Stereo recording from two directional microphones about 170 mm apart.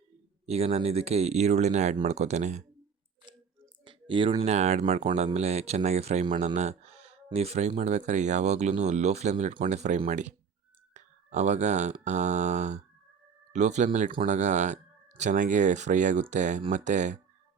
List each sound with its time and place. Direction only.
0.4 s speech: 40° right (ahead or behind)
3.8 s speech: 30° right (ahead or behind); by 17.2 s 45° right (ahead or behind)